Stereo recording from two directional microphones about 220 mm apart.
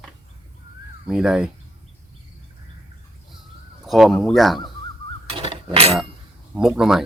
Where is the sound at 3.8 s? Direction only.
Centre (ahead or behind).